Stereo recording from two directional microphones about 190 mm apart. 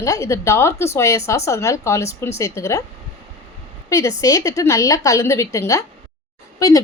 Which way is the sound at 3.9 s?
15° left (ahead or behind).